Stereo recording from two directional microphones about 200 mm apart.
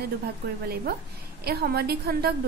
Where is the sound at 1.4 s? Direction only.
50° right (ahead or behind).